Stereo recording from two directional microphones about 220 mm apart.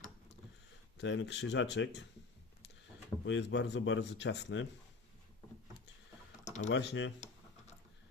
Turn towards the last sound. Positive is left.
turn(degrees=55)  # may be behind; listen again after turning